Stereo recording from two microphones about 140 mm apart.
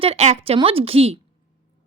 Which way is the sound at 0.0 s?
50° right (ahead or behind).